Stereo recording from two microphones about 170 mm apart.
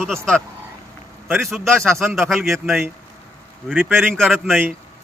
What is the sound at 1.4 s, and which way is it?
A man's voice, centre (ahead or behind).